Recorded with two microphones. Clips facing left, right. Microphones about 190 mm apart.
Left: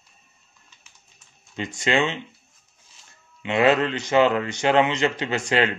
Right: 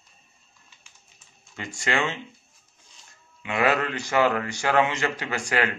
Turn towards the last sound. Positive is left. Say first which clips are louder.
# left 4 dB
turn(degrees=25)  # may be behind; listen again after turning